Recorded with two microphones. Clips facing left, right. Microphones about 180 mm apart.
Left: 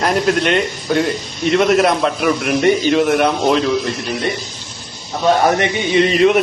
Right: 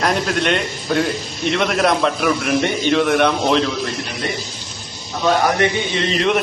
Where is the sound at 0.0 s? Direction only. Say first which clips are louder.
Left 3 dB; centre (ahead or behind).